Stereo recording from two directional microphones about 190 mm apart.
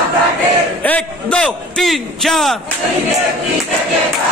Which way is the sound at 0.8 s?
5° left (ahead or behind).